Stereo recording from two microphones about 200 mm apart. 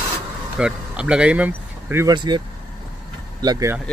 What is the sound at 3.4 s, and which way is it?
Speech, 20° right (ahead or behind).